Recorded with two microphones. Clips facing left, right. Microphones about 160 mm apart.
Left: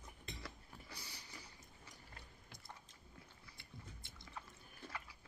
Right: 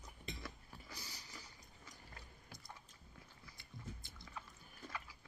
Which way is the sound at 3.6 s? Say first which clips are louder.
Right 5 dB; 25° left (ahead or behind).